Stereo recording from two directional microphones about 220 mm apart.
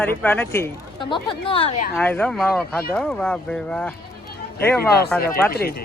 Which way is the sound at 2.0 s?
5° left (ahead or behind).